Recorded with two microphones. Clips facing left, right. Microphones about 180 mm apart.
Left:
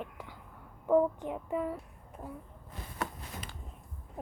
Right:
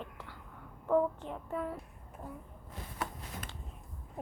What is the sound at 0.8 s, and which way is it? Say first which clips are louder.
Child singing: left 3 dB; 10° left (ahead or behind).